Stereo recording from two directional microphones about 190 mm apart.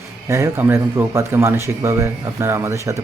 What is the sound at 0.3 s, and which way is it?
Speech, 15° right (ahead or behind).